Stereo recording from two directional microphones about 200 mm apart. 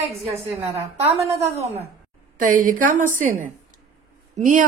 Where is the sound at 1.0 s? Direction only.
30° right (ahead or behind).